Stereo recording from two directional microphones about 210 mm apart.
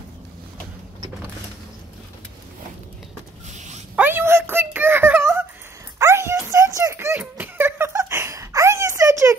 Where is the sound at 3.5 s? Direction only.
35° right (ahead or behind).